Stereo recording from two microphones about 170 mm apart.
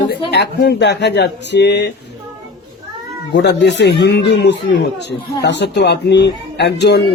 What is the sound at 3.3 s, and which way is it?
Speech, 80° left.